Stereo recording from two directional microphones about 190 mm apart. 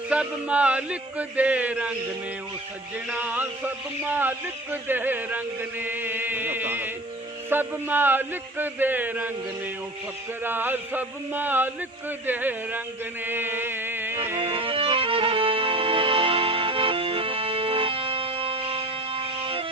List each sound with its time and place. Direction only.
0.1 s a man's voice: 5° right (ahead or behind)
3.1 s a man's voice: 10° right (ahead or behind)
10.4 s a man's voice: 10° right (ahead or behind)
13.2 s music: 10° right (ahead or behind)
14.5 s music: 30° right (ahead or behind)